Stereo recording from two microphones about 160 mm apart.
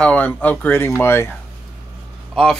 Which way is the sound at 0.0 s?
10° left (ahead or behind).